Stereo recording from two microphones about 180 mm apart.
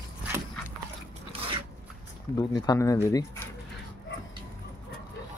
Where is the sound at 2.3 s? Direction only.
20° left (ahead or behind).